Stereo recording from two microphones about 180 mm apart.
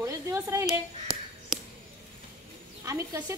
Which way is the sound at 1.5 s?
Centre (ahead or behind).